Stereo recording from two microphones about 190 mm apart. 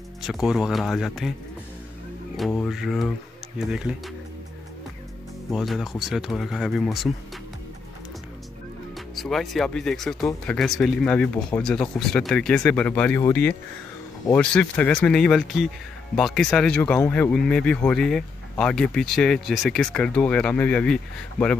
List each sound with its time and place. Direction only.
0.2 s speech: centre (ahead or behind)
2.3 s speech: centre (ahead or behind)
5.5 s speech: centre (ahead or behind)
8.9 s speech: centre (ahead or behind)